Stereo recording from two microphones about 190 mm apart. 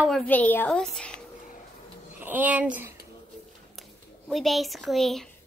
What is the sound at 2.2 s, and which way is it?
A woman's voice, 10° right (ahead or behind).